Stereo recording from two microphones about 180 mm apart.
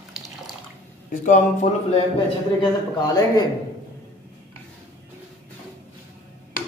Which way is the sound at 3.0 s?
20° left (ahead or behind).